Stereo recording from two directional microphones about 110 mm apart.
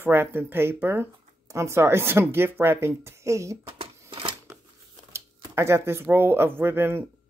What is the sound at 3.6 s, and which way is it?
Shuffling cards, 55° right (ahead or behind).